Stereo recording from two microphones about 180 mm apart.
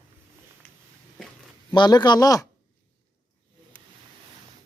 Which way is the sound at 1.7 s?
25° left (ahead or behind).